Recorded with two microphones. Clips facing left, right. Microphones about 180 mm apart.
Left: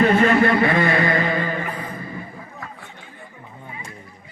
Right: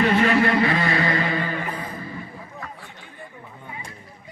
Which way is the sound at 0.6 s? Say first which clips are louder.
Left 3 dB; 50° left (ahead or behind).